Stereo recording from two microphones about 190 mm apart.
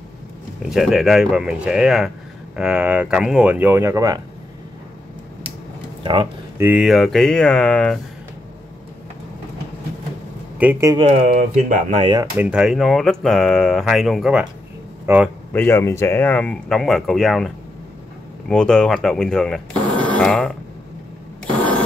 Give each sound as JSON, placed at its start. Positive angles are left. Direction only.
{"t": 0.7, "sound": "speech", "side_deg": 0}
{"t": 6.6, "sound": "speech", "side_deg": -5}
{"t": 10.6, "sound": "a man's voice", "side_deg": -10}
{"t": 11.0, "sound": "speech", "side_deg": -35}
{"t": 12.0, "sound": "speech", "side_deg": -20}
{"t": 12.4, "sound": "a man's voice", "side_deg": -5}
{"t": 15.5, "sound": "speech", "side_deg": 10}
{"t": 18.5, "sound": "speech", "side_deg": 5}